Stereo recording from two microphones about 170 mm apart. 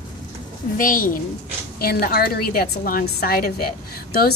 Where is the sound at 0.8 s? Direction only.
55° left (ahead or behind).